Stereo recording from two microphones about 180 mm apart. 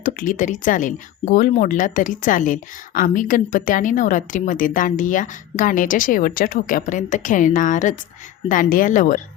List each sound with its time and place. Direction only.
0.0 s speech: 50° left (ahead or behind)